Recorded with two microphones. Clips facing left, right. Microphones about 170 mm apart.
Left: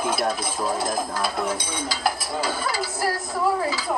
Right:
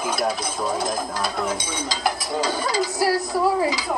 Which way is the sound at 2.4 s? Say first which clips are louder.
Right 3 dB; 20° right (ahead or behind).